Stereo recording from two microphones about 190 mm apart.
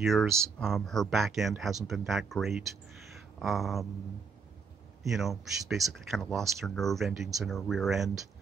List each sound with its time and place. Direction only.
0.0 s speech: centre (ahead or behind)
5.0 s speech: centre (ahead or behind)